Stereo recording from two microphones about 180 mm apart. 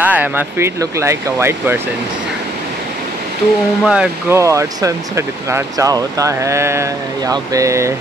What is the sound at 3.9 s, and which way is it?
Speech, 10° right (ahead or behind).